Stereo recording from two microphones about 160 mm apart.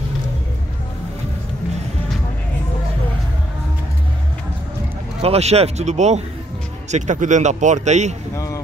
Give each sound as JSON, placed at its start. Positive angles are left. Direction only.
{"t": 5.2, "sound": "a man's voice", "side_deg": -40}